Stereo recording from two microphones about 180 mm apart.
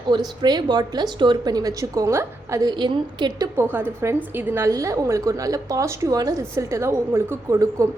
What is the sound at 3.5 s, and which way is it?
A woman's voice, 10° right (ahead or behind).